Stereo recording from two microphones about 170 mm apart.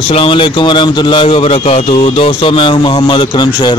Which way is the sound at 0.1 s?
30° left (ahead or behind).